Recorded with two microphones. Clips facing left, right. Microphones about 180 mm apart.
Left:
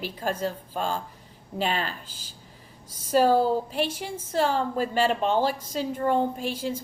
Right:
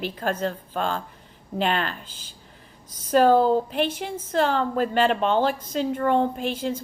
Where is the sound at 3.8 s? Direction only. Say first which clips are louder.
Right 3 dB; 10° left (ahead or behind).